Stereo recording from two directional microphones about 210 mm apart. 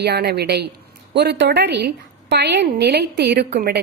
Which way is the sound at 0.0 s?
50° right (ahead or behind).